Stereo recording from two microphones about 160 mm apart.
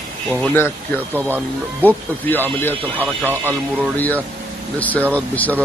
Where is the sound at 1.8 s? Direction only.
10° left (ahead or behind).